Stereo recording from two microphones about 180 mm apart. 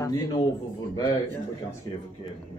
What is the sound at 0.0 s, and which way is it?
Speech, 20° left (ahead or behind).